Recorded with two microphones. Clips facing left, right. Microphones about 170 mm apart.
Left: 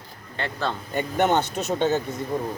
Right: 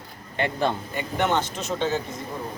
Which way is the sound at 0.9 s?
40° left (ahead or behind).